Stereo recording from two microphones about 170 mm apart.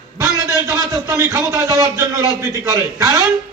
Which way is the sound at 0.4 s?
15° right (ahead or behind).